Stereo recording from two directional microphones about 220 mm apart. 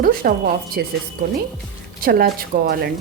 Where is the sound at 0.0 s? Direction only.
40° right (ahead or behind).